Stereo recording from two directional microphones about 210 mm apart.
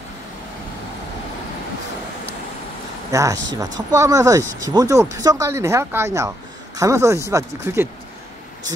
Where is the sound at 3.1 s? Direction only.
15° right (ahead or behind).